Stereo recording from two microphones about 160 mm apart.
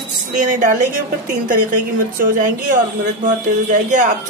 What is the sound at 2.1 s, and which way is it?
A woman's voice, 55° right (ahead or behind).